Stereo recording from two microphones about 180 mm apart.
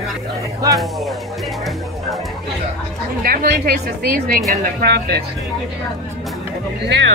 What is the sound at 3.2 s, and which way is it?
A woman's voice, 55° right (ahead or behind).